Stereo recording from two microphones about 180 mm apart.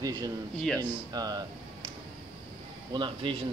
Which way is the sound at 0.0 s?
20° right (ahead or behind).